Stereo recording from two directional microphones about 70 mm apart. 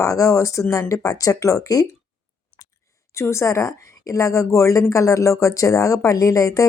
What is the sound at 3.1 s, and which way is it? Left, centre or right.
A woman's voice, left.